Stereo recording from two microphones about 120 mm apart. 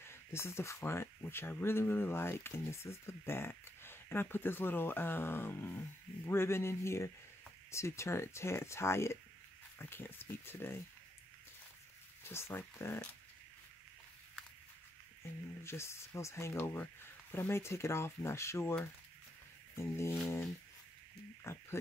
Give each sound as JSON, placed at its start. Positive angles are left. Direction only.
{"t": 0.0, "sound": "speech", "side_deg": 20}
{"t": 12.2, "sound": "speech", "side_deg": 20}
{"t": 15.6, "sound": "speech", "side_deg": 20}
{"t": 19.8, "sound": "speech", "side_deg": 20}
{"t": 21.5, "sound": "speech", "side_deg": 20}